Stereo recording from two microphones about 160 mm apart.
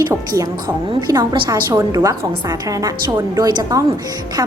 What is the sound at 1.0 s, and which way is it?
A woman's voice, 25° right (ahead or behind).